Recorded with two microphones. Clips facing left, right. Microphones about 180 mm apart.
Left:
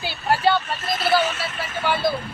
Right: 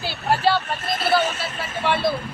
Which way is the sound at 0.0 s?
Centre (ahead or behind).